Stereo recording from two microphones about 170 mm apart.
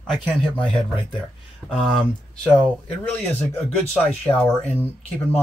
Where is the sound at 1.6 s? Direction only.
Centre (ahead or behind).